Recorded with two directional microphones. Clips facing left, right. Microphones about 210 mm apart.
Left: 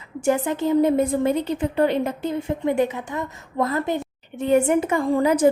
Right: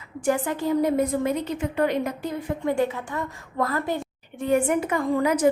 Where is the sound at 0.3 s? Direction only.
25° left (ahead or behind).